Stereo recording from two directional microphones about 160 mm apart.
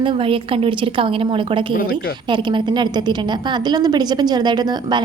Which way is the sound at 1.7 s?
65° left (ahead or behind).